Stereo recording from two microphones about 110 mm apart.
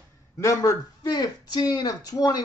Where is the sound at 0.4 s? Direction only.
30° left (ahead or behind).